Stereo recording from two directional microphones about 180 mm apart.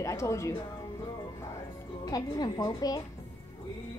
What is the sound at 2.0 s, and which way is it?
Speech, 20° left (ahead or behind).